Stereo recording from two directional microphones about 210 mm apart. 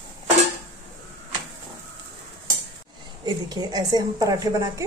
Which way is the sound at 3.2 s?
20° right (ahead or behind).